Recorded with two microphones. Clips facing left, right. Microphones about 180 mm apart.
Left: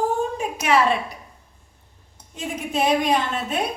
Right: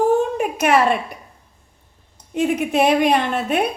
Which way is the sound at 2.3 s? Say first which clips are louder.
Right 8 dB; 65° right (ahead or behind).